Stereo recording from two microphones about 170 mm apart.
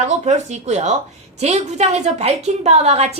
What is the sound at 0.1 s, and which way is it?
A woman's voice, 40° right (ahead or behind).